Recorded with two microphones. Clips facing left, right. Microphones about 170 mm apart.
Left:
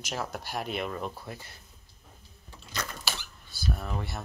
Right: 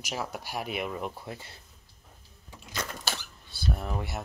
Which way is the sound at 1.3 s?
25° right (ahead or behind).